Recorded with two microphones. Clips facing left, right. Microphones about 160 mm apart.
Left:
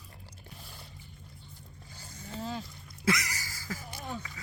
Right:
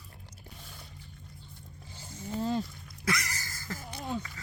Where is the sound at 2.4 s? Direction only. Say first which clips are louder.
Right 7 dB; 40° right (ahead or behind).